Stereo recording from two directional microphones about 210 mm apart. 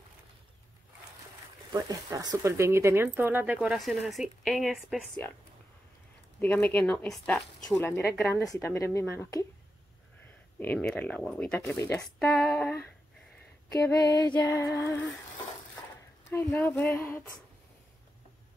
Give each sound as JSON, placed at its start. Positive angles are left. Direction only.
{"t": 1.7, "sound": "a woman's voice", "side_deg": -15}
{"t": 6.4, "sound": "speech", "side_deg": 10}
{"t": 10.6, "sound": "speech", "side_deg": 10}
{"t": 16.3, "sound": "speech", "side_deg": 10}